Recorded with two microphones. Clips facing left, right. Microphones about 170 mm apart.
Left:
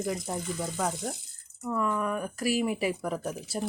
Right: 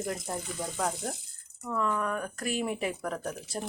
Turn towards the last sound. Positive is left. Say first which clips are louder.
# left 2 dB
turn(degrees=5)  # may be behind; listen again after turning